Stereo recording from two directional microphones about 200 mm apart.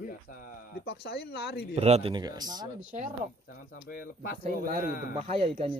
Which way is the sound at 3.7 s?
50° left (ahead or behind).